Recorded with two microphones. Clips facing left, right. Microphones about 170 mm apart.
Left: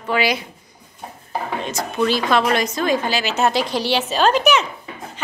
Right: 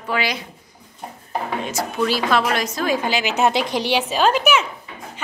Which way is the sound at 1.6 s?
10° right (ahead or behind).